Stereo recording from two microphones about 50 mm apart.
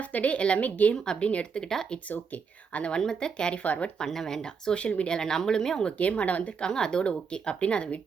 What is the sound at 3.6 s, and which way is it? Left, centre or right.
Speech, left.